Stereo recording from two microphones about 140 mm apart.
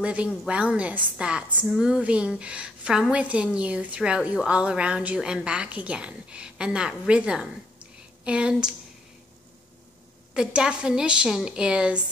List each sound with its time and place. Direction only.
0.0 s a woman's voice: 10° right (ahead or behind)
10.3 s a woman's voice: 5° right (ahead or behind)